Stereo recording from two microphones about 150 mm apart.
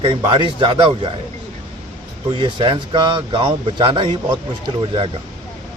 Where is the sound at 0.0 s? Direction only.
35° right (ahead or behind).